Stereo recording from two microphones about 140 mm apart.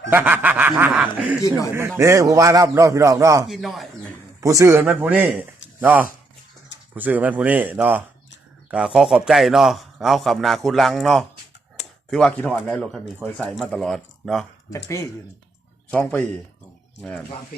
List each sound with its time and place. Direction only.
0.1 s speech: 10° right (ahead or behind)
1.4 s speech: 25° left (ahead or behind)
2.0 s a man's voice: 20° right (ahead or behind)
3.4 s a man's voice: centre (ahead or behind)
4.4 s a man's voice: 20° right (ahead or behind); by 14.4 s centre (ahead or behind)
14.7 s a man's voice: 20° left (ahead or behind)